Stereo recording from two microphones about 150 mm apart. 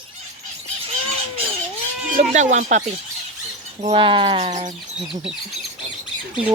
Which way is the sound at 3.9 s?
35° right (ahead or behind).